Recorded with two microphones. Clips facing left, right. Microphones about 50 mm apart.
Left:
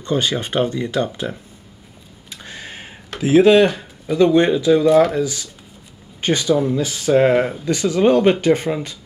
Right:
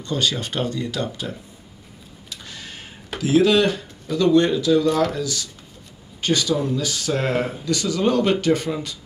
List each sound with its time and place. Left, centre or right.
0.0 s speech: left
2.2 s tick-tock: left
3.2 s speech: left